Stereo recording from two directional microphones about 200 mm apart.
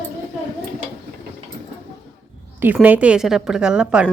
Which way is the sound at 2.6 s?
10° right (ahead or behind).